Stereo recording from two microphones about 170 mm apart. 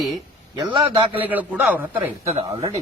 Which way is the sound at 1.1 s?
10° right (ahead or behind).